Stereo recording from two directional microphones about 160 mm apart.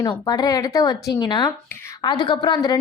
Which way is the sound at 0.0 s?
25° left (ahead or behind).